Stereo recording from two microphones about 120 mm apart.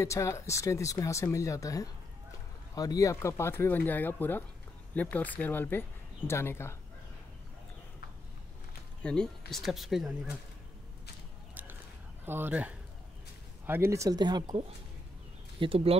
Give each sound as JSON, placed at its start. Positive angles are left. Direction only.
{"t": 0.0, "sound": "speech", "side_deg": 25}
{"t": 9.0, "sound": "speech", "side_deg": 5}
{"t": 12.3, "sound": "speech", "side_deg": -15}
{"t": 15.6, "sound": "speech", "side_deg": -50}